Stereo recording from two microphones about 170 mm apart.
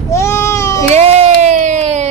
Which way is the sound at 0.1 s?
15° left (ahead or behind).